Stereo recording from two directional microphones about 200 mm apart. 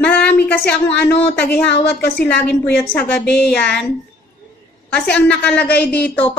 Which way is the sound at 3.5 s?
55° left (ahead or behind).